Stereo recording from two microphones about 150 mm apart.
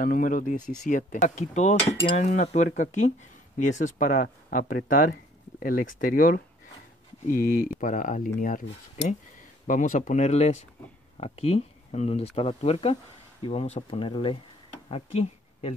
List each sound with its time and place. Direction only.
0.0 s speech: 65° left (ahead or behind)
9.7 s speech: 55° left (ahead or behind); by 15.7 s 40° left (ahead or behind)